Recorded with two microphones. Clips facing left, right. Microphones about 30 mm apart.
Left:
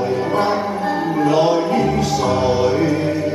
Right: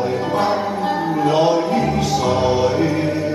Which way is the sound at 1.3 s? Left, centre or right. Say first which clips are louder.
Even; right.